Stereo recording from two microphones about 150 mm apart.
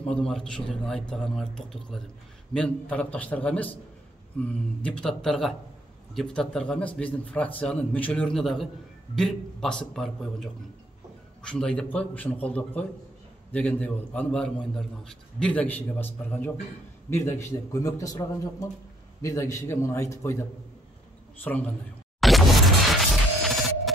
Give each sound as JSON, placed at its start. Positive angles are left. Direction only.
{"t": 0.0, "sound": "a man's voice", "side_deg": 5}
{"t": 21.5, "sound": "a man's voice", "side_deg": 5}
{"t": 22.2, "sound": "a sound", "side_deg": 0}
{"t": 22.9, "sound": "music", "side_deg": 0}